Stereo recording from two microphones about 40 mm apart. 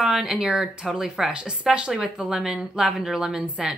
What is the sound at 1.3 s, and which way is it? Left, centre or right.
A woman's voice, right.